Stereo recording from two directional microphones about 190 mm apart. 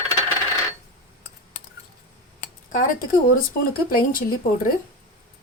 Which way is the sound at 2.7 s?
45° left (ahead or behind).